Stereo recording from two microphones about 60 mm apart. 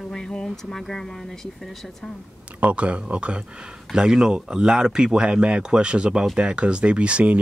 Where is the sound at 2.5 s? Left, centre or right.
Right.